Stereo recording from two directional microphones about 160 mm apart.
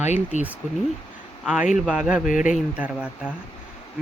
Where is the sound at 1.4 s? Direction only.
5° right (ahead or behind).